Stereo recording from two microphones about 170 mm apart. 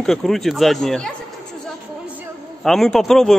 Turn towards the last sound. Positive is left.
turn(degrees=0)  # may be behind; listen again after turning